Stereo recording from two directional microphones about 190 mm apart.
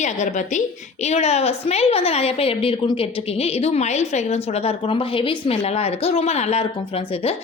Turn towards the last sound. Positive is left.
turn(degrees=30)  # may be behind; listen again after turning